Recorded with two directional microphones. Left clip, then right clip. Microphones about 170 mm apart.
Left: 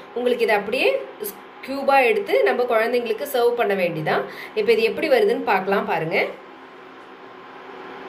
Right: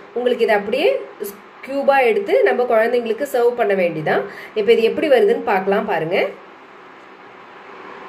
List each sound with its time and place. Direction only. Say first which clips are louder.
0.5 s a woman's voice: right 3 dB; 50° right (ahead or behind)